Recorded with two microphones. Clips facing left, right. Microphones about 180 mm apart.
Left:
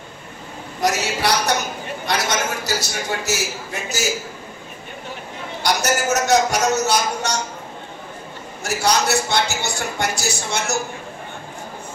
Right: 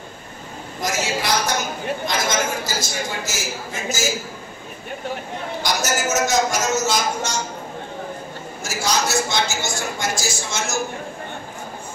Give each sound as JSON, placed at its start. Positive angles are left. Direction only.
{"t": 0.7, "sound": "a man's voice", "side_deg": 70}
{"t": 5.6, "sound": "speech", "side_deg": 65}
{"t": 8.6, "sound": "speech", "side_deg": 65}